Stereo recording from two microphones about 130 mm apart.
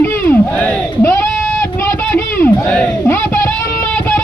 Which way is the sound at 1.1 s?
20° left (ahead or behind).